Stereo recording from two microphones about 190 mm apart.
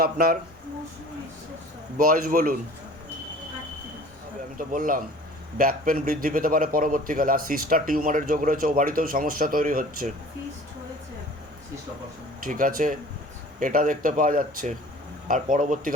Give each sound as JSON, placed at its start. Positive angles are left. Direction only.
{"t": 0.0, "sound": "a man's voice", "side_deg": -55}
{"t": 2.0, "sound": "a man's voice", "side_deg": -50}
{"t": 4.5, "sound": "a man's voice", "side_deg": -45}
{"t": 12.4, "sound": "a man's voice", "side_deg": -45}